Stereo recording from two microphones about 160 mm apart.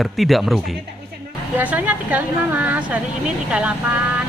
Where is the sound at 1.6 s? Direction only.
10° right (ahead or behind).